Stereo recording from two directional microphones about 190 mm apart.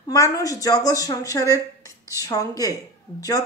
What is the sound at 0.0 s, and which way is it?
Speech, 20° left (ahead or behind).